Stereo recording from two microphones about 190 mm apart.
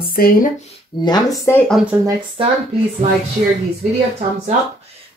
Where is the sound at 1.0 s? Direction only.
20° left (ahead or behind).